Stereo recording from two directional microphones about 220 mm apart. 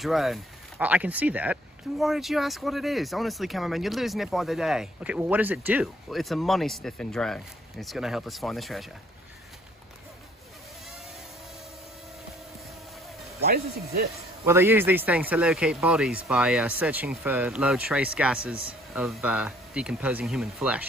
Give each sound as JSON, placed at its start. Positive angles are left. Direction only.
{"t": 0.0, "sound": "speech", "side_deg": 0}
{"t": 13.4, "sound": "speech", "side_deg": -45}
{"t": 14.4, "sound": "speech", "side_deg": -10}